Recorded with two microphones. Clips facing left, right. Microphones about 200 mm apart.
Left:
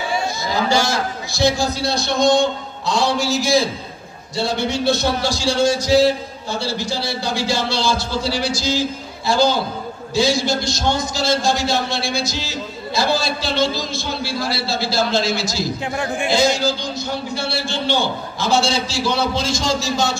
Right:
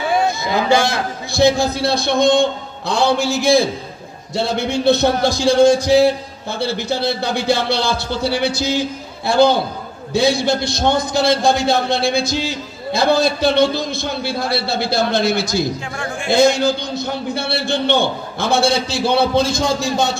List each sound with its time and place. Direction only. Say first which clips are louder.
0.1 s a man's voice: right 6 dB; 55° right (ahead or behind)